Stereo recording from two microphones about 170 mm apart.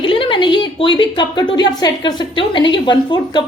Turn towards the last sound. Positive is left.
turn(degrees=25)  # may be behind; listen again after turning